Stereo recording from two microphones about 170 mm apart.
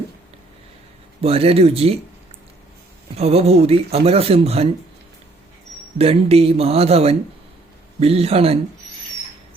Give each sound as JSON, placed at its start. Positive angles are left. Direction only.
{"t": 1.2, "sound": "speech", "side_deg": -35}
{"t": 3.2, "sound": "speech", "side_deg": -35}
{"t": 6.0, "sound": "speech", "side_deg": -35}